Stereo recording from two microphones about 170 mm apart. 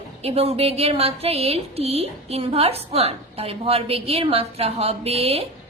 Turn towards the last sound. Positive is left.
turn(degrees=-35)  # may be behind; listen again after turning